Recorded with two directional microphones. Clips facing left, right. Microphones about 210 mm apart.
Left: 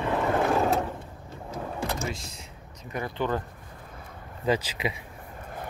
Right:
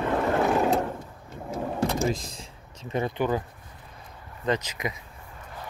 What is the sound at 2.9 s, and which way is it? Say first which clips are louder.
Speech: right 5 dB; 20° right (ahead or behind).